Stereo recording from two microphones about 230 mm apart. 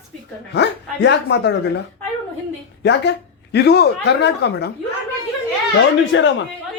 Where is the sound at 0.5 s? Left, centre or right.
Left.